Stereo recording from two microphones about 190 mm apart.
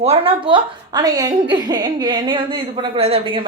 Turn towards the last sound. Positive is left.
turn(degrees=-25)  # may be behind; listen again after turning